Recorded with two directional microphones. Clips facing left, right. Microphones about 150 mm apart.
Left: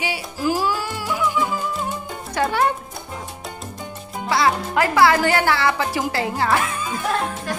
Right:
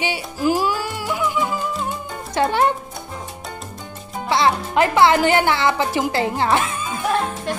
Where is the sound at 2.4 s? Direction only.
25° right (ahead or behind).